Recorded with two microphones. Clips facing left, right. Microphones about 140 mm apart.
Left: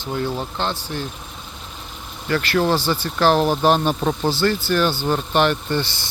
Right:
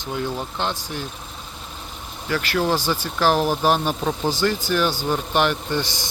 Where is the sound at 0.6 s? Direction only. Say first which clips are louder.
Left 1 dB; 15° right (ahead or behind).